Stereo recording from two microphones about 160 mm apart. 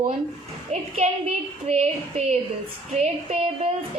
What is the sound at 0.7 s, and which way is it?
A woman's voice, 40° right (ahead or behind).